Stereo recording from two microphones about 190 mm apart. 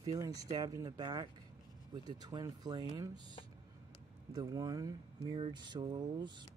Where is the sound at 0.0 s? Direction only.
20° right (ahead or behind).